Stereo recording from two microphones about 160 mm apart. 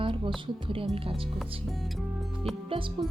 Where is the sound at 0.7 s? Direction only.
35° right (ahead or behind).